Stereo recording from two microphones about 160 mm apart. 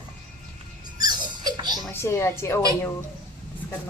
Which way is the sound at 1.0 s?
25° right (ahead or behind).